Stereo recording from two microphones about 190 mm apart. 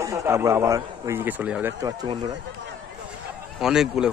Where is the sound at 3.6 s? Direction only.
5° right (ahead or behind).